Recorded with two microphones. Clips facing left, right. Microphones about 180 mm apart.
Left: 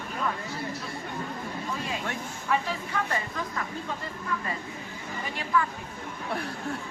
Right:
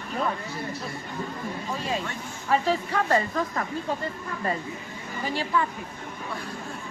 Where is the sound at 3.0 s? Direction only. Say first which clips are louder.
Right 8 dB; 60° right (ahead or behind).